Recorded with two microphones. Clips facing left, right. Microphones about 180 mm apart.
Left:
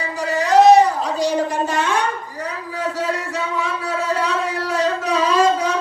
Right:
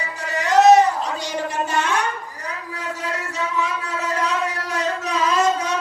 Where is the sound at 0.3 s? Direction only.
35° left (ahead or behind).